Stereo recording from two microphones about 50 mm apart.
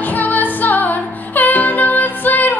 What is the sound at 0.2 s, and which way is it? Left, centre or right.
Music, left.